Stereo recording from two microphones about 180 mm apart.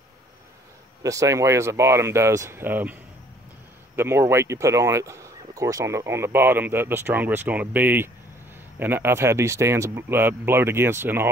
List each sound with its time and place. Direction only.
1.0 s speech: 15° right (ahead or behind)